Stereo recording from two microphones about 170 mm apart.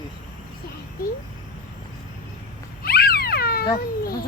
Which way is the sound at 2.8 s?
60° left (ahead or behind).